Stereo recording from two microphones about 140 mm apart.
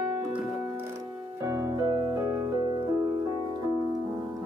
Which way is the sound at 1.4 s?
20° right (ahead or behind).